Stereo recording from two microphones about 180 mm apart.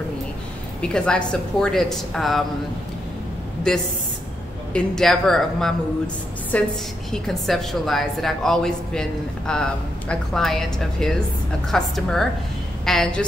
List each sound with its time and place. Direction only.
0.7 s a woman's voice: 5° left (ahead or behind)
3.7 s a woman's voice: 5° left (ahead or behind)